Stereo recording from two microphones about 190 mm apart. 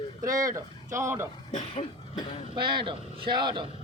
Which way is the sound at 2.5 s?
25° right (ahead or behind).